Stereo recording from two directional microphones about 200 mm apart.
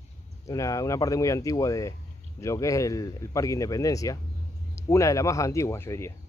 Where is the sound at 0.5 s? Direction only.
15° left (ahead or behind).